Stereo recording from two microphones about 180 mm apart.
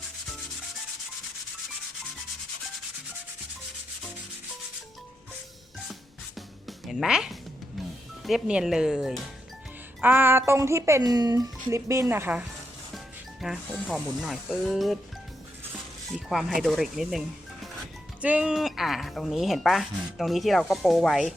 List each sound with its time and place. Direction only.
5.9 s music: centre (ahead or behind)
8.2 s speech: 5° right (ahead or behind)